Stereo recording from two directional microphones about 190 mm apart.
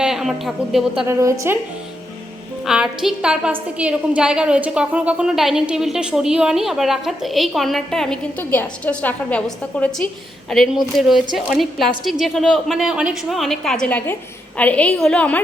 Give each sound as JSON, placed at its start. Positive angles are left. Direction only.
{"t": 0.0, "sound": "a woman's voice", "side_deg": 0}
{"t": 1.0, "sound": "a woman's voice", "side_deg": -15}
{"t": 2.6, "sound": "a woman's voice", "side_deg": 0}